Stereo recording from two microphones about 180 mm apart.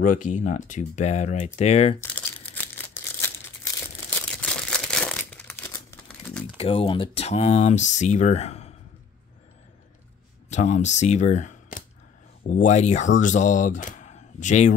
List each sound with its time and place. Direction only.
0.0 s speech: 45° left (ahead or behind)
2.0 s crumpling: 15° left (ahead or behind)
2.8 s a sound: 10° left (ahead or behind)
4.4 s crumpling: 5° left (ahead or behind)
6.6 s speech: 30° left (ahead or behind)
10.5 s speech: 40° left (ahead or behind)